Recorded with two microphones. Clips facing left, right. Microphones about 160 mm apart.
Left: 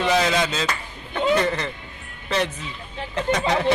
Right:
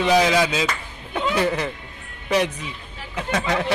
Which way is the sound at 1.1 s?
10° right (ahead or behind).